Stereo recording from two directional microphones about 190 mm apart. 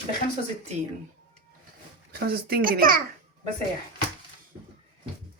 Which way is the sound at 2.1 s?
55° right (ahead or behind).